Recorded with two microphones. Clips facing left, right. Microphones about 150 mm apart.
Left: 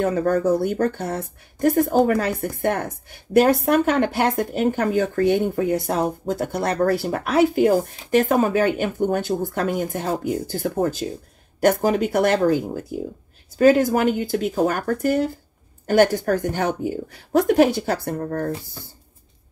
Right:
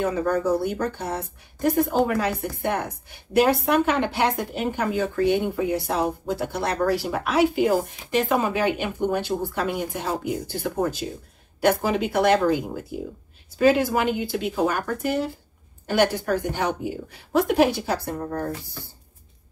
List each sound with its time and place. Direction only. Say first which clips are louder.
0.0 s a woman's voice: left 3 dB; 50° left (ahead or behind)